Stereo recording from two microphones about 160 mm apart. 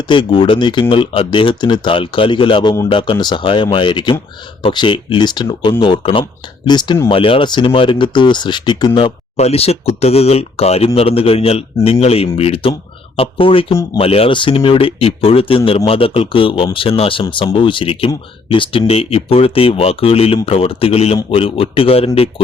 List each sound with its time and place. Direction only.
0.1 s speech: 30° left (ahead or behind)